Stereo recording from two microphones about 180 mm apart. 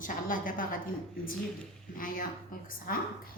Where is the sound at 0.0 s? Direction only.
50° left (ahead or behind).